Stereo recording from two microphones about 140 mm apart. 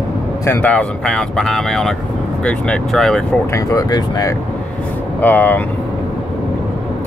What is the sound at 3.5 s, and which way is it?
Speech, 25° left (ahead or behind).